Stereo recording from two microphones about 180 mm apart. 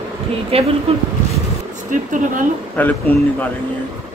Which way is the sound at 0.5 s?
35° right (ahead or behind).